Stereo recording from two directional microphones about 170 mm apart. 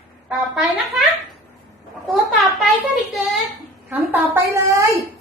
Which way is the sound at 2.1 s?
Centre (ahead or behind).